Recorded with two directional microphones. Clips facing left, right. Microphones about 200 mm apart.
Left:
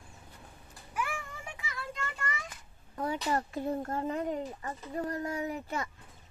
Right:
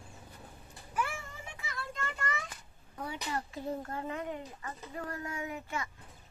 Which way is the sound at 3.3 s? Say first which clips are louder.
Left 3 dB; 50° left (ahead or behind).